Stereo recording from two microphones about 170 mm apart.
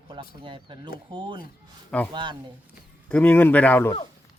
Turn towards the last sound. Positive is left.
turn(degrees=10)  # may be behind; listen again after turning